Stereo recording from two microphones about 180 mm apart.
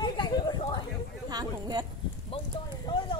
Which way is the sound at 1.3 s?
20° right (ahead or behind).